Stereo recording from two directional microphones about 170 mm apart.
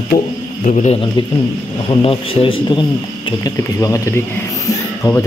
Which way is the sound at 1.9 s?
30° left (ahead or behind).